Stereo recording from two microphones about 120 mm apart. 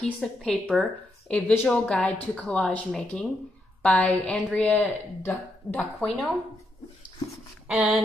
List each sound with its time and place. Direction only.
0.0 s speech: 5° left (ahead or behind)
1.3 s speech: 20° left (ahead or behind)
6.0 s speech: 5° left (ahead or behind)
7.6 s speech: 5° right (ahead or behind)